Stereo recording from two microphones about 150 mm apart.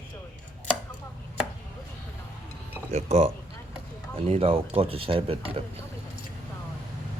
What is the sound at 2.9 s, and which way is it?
Speech, 40° right (ahead or behind).